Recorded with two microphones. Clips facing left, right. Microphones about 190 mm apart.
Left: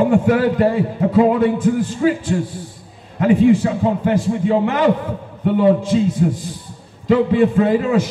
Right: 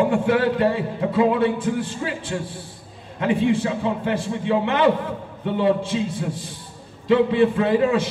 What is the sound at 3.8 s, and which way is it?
A man's voice, 40° left (ahead or behind).